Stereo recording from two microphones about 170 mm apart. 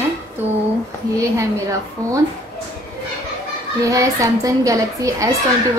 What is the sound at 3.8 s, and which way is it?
A woman's voice, 20° right (ahead or behind).